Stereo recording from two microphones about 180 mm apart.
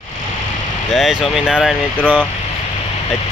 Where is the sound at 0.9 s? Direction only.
Centre (ahead or behind).